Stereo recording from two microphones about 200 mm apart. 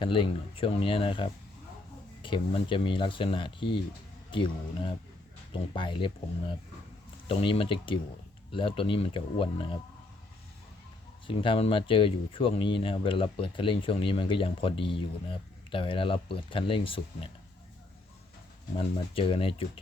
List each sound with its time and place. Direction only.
0.0 s speech: 25° left (ahead or behind)
7.3 s speech: 30° left (ahead or behind)
11.3 s speech: 25° left (ahead or behind)
18.8 s speech: 25° left (ahead or behind)